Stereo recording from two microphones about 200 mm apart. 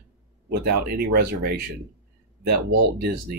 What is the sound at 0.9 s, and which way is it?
Speech, 50° right (ahead or behind).